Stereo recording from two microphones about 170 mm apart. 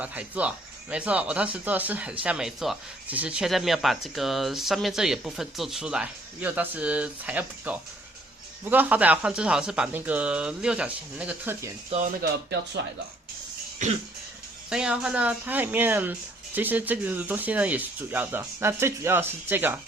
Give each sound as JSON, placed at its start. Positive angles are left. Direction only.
{"t": 0.0, "sound": "speech", "side_deg": -10}
{"t": 11.9, "sound": "speech", "side_deg": -45}
{"t": 13.8, "sound": "speech", "side_deg": -45}
{"t": 14.7, "sound": "speech", "side_deg": -5}